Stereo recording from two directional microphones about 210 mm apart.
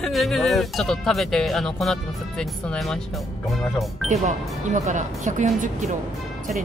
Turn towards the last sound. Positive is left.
turn(degrees=-35)  # may be behind; listen again after turning